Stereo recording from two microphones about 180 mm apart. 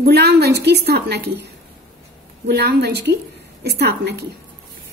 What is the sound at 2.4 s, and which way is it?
A woman's voice, 65° right (ahead or behind).